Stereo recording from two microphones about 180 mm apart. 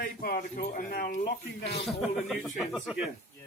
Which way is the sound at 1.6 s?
70° left (ahead or behind).